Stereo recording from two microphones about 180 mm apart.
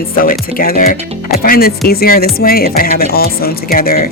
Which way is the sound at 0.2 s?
55° left (ahead or behind).